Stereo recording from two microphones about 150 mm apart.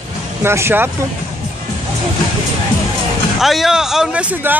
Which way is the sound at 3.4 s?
Centre (ahead or behind).